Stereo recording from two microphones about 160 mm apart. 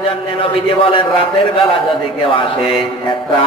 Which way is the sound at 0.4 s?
35° left (ahead or behind).